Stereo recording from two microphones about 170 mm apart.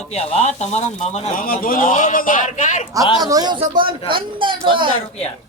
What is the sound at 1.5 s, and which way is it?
A man's voice, 55° left (ahead or behind).